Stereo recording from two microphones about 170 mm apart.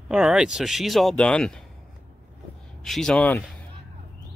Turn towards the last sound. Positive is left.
turn(degrees=10)  # may be behind; listen again after turning